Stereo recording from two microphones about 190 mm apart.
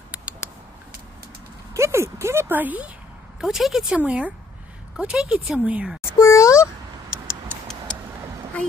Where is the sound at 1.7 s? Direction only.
15° right (ahead or behind).